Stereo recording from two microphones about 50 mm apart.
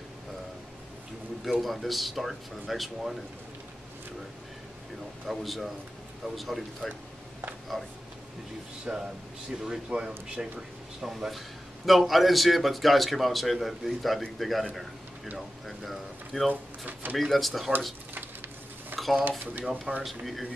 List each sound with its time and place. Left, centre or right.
1.4 s a man's voice: centre
5.2 s a man's voice: centre
8.9 s speech: right
11.0 s a man's voice: centre
16.8 s speech: right
17.2 s a man's voice: centre
18.9 s a sound: centre
20.0 s a man's voice: centre